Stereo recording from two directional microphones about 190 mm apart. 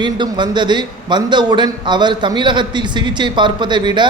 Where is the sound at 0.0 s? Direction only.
25° right (ahead or behind).